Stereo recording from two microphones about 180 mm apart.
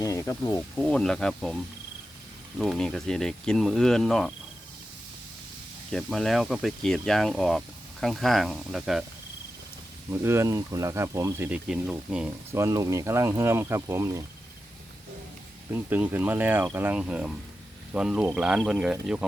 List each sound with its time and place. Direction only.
0.0 s speech: 15° left (ahead or behind)
0.9 s speech: 5° left (ahead or behind)
2.6 s speech: centre (ahead or behind)
5.9 s speech: centre (ahead or behind)
10.1 s speech: 15° right (ahead or behind)
15.7 s speech: 10° right (ahead or behind)